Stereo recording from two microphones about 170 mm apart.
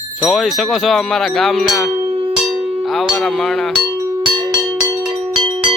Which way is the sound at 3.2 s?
Centre (ahead or behind).